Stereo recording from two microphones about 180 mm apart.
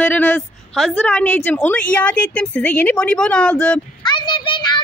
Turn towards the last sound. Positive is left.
turn(degrees=25)  # may be behind; listen again after turning